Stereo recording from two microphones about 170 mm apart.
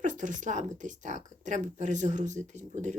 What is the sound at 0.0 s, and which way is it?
Speech, 50° right (ahead or behind).